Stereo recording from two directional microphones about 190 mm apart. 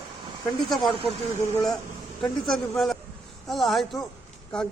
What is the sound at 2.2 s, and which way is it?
Speech, centre (ahead or behind).